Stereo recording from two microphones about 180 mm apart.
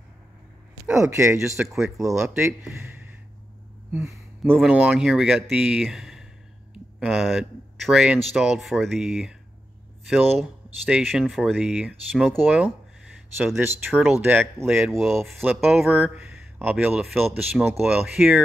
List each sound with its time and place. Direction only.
0.9 s speech: 15° right (ahead or behind)
1.6 s speech: centre (ahead or behind)
3.9 s speech: centre (ahead or behind)
10.9 s speech: centre (ahead or behind)
14.6 s speech: centre (ahead or behind)